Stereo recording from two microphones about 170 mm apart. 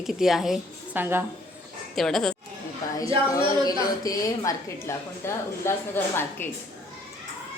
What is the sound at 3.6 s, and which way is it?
A woman's voice, 20° left (ahead or behind).